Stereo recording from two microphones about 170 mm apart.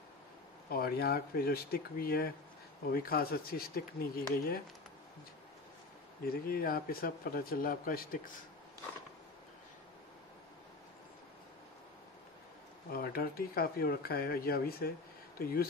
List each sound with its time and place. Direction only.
0.7 s speech: 65° left (ahead or behind)
6.2 s speech: 60° left (ahead or behind)
12.9 s speech: 60° left (ahead or behind)